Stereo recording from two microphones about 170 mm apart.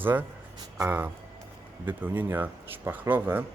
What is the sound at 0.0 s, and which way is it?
Speech, 10° right (ahead or behind).